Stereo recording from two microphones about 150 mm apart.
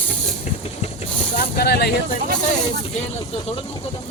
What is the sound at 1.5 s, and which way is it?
Speech, 90° left.